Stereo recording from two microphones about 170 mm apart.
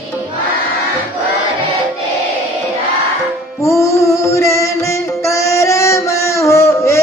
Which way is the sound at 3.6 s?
15° left (ahead or behind).